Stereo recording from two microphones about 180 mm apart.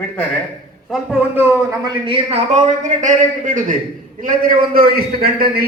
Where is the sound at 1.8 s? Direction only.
25° right (ahead or behind).